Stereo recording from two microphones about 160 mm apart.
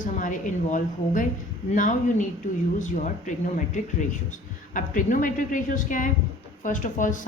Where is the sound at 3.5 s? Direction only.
50° left (ahead or behind).